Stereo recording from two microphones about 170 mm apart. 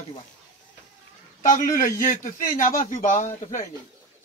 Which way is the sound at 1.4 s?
50° left (ahead or behind).